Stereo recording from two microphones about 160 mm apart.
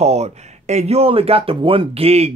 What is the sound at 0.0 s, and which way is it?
Speech, 45° right (ahead or behind).